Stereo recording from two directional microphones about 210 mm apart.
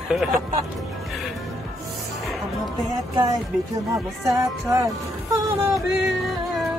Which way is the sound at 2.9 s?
20° right (ahead or behind).